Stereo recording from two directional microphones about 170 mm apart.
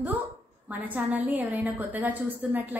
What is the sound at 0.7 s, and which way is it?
A woman's voice, 10° right (ahead or behind).